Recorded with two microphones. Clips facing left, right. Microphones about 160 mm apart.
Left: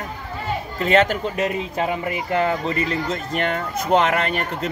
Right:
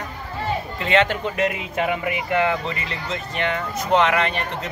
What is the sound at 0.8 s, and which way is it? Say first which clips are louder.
A man's voice: left 3 dB; 40° left (ahead or behind).